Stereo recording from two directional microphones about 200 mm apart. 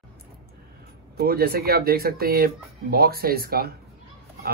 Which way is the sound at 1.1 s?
50° right (ahead or behind).